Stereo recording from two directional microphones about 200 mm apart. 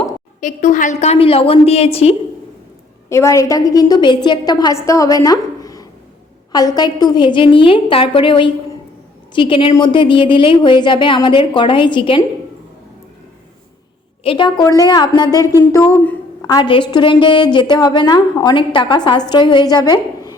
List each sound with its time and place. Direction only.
0.3 s a woman's voice: 40° left (ahead or behind)
3.1 s a woman's voice: 15° left (ahead or behind)
14.3 s a woman's voice: 25° left (ahead or behind)